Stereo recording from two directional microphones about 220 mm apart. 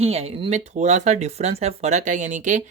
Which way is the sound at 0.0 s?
25° right (ahead or behind).